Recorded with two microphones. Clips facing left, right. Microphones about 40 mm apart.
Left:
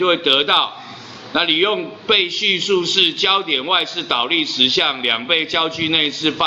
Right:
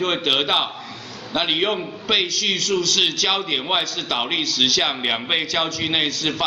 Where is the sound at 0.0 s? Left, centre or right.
Left.